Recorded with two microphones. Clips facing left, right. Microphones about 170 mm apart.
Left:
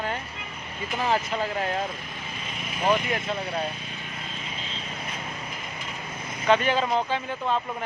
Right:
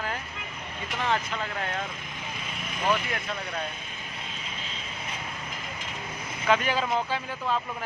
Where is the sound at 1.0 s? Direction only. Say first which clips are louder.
Left 3 dB; 35° left (ahead or behind).